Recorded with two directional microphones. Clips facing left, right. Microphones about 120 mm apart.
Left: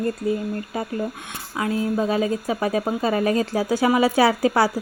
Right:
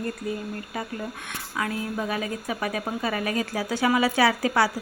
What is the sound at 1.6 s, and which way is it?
Speech, 25° left (ahead or behind).